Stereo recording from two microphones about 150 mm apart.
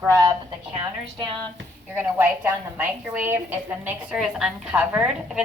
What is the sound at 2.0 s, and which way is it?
A woman's voice, 15° right (ahead or behind).